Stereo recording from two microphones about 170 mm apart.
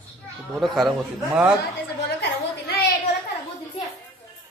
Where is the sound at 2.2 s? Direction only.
70° left (ahead or behind).